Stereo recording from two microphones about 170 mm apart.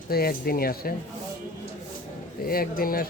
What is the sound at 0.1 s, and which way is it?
Speech, 65° left (ahead or behind).